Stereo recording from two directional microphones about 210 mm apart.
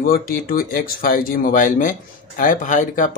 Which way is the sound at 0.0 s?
45° left (ahead or behind).